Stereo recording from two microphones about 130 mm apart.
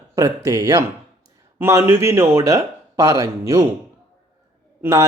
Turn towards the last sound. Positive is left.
turn(degrees=-20)  # may be behind; listen again after turning